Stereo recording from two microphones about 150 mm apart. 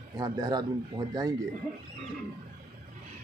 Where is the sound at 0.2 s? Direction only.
25° right (ahead or behind).